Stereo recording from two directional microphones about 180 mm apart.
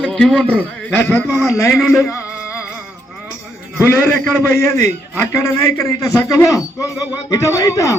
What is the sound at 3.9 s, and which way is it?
A man's voice, 10° left (ahead or behind).